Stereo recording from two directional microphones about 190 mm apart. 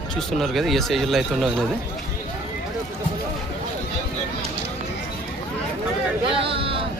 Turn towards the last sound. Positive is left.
turn(degrees=-30)  # may be behind; listen again after turning